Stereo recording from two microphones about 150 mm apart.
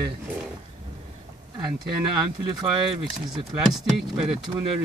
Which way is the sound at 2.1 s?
30° right (ahead or behind).